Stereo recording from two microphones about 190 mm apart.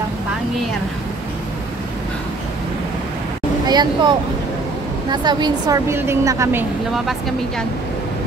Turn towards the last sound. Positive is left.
turn(degrees=0)  # may be behind; listen again after turning